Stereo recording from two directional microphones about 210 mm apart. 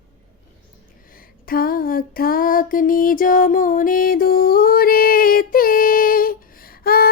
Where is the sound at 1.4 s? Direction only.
45° left (ahead or behind).